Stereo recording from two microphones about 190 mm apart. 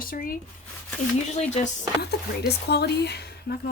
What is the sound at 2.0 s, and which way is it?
Speech, 60° left (ahead or behind).